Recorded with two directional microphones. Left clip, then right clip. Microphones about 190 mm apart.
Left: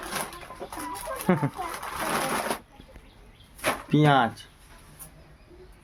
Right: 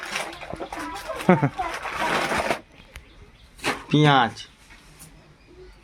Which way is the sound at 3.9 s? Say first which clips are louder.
Right 3 dB; 10° left (ahead or behind).